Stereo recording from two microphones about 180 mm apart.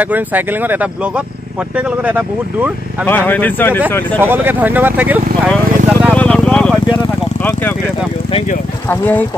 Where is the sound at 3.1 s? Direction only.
10° left (ahead or behind).